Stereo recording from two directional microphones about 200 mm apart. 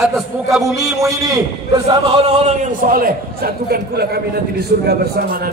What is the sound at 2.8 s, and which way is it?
A man's voice, 45° right (ahead or behind).